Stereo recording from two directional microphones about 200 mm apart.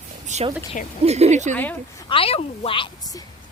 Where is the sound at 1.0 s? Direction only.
30° right (ahead or behind).